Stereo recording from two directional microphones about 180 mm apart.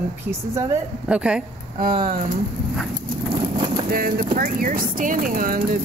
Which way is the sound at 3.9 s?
50° right (ahead or behind).